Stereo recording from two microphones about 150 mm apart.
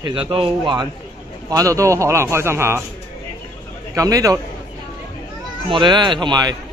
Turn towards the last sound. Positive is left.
turn(degrees=-30)  # may be behind; listen again after turning